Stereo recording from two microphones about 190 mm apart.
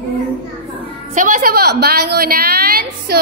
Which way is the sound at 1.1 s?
45° right (ahead or behind).